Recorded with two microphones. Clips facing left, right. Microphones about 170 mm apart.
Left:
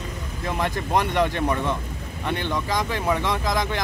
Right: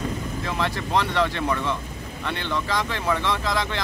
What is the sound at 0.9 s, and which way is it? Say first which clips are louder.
Speech: left 1 dB; 15° left (ahead or behind).